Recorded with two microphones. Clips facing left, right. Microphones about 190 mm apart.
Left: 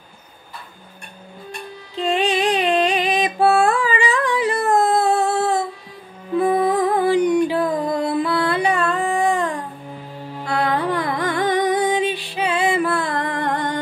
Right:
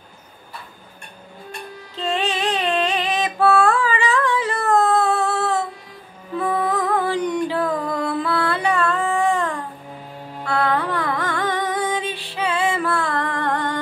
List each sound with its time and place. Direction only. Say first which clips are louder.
2.0 s music: left 4 dB; 15° left (ahead or behind)